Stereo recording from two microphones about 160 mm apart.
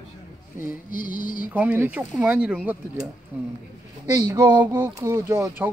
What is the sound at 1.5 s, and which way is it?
Speech, 10° right (ahead or behind).